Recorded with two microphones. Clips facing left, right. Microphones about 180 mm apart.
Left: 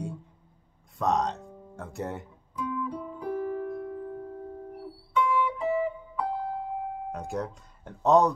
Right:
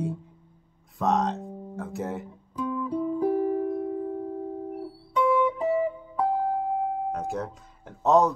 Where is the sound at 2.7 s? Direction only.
40° right (ahead or behind).